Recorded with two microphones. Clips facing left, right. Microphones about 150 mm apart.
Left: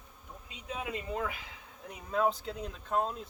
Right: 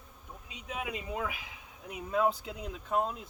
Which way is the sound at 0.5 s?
15° right (ahead or behind).